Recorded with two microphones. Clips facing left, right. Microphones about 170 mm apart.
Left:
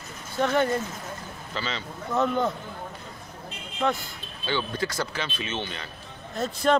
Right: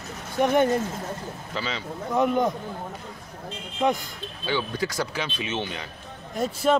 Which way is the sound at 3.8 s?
15° right (ahead or behind).